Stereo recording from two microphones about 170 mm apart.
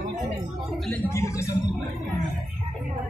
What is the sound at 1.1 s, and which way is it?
Speech, 15° left (ahead or behind).